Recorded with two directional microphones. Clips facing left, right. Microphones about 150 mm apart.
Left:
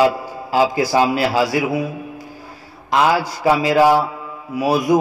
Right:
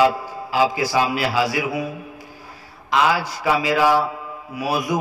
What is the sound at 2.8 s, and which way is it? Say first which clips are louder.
Mantra: left 3 dB; 40° left (ahead or behind).